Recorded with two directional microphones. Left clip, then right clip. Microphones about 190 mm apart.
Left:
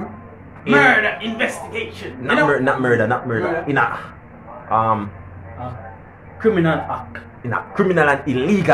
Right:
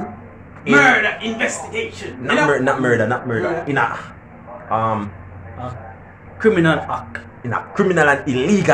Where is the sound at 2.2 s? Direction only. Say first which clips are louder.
Even; centre (ahead or behind).